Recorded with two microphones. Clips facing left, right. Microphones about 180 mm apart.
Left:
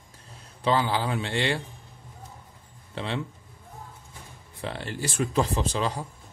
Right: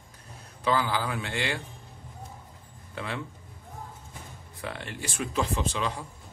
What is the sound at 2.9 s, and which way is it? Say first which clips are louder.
Speech: left 4 dB; 30° left (ahead or behind).